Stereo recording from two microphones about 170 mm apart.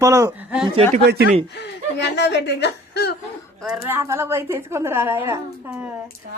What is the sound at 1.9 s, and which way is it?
Speech, 90° left.